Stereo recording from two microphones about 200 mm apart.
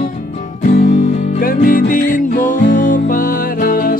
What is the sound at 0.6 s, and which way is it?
Music, 35° left (ahead or behind).